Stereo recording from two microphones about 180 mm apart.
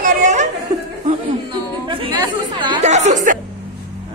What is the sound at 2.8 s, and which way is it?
Music, 40° right (ahead or behind).